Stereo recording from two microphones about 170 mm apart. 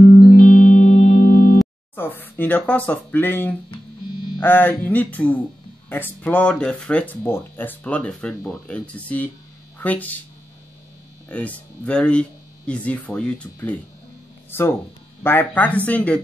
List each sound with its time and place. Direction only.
0.3 s music: 50° left (ahead or behind)
2.0 s speech: 10° left (ahead or behind)
11.2 s speech: 10° left (ahead or behind)